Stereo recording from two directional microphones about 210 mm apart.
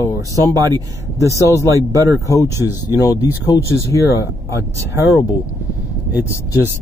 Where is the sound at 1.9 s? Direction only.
15° right (ahead or behind).